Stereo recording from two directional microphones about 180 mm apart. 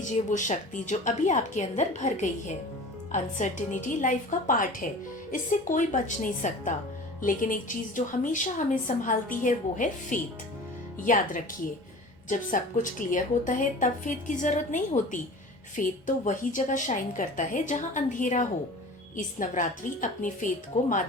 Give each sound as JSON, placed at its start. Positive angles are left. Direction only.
{"t": 0.0, "sound": "a woman's voice", "side_deg": 45}